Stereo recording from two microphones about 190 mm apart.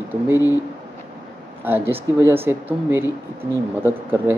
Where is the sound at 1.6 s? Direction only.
10° right (ahead or behind).